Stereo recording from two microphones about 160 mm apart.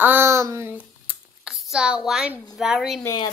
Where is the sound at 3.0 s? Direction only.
25° left (ahead or behind).